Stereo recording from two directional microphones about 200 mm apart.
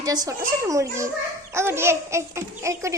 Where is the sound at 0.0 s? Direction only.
20° right (ahead or behind).